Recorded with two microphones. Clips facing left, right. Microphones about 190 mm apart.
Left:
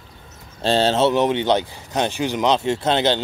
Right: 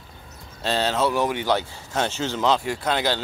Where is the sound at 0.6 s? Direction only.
30° left (ahead or behind).